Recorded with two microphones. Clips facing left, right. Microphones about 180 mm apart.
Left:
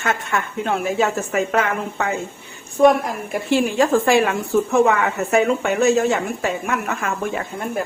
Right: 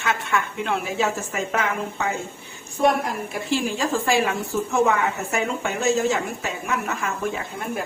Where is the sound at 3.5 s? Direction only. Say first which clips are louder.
Left 7 dB; 60° left (ahead or behind).